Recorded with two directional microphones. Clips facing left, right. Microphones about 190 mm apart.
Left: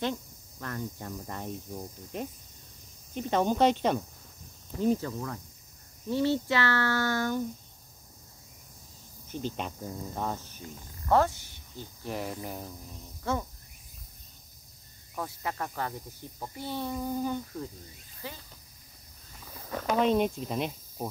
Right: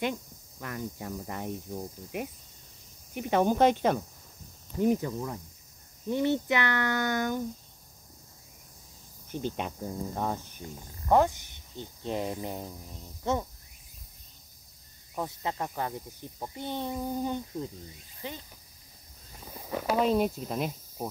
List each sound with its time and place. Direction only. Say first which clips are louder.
0.0 s cricket: even; 10° right (ahead or behind)
6.0 s speech: even; 20° right (ahead or behind)
9.6 s cricket: right 2 dB; 10° right (ahead or behind)
13.2 s speech: right 2 dB; 20° right (ahead or behind)
15.1 s speech: right 2 dB; 20° right (ahead or behind)
19.4 s speech: right 2 dB; 15° right (ahead or behind)